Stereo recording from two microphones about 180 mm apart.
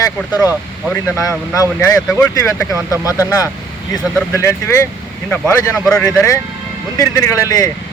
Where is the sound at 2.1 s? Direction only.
15° left (ahead or behind).